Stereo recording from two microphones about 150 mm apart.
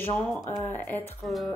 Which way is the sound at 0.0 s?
15° left (ahead or behind).